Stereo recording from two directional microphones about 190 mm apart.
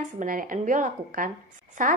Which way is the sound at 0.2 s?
45° right (ahead or behind).